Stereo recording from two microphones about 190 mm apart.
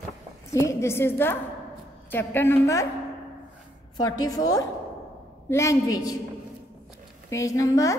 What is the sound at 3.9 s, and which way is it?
A woman's voice, 20° left (ahead or behind).